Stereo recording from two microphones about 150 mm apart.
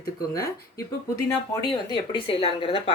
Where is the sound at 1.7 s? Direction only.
30° left (ahead or behind).